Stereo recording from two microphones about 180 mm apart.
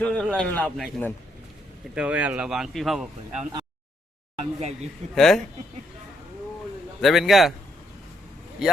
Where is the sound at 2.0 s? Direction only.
10° right (ahead or behind).